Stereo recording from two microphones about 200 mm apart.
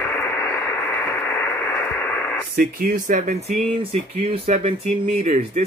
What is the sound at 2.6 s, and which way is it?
Speech, 45° right (ahead or behind).